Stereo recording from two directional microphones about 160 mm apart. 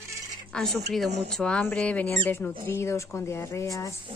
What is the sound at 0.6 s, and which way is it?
A woman's voice, 5° left (ahead or behind).